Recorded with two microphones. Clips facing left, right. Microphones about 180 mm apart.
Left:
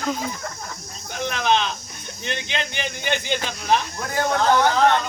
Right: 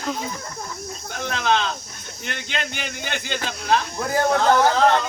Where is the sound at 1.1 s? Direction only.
20° left (ahead or behind).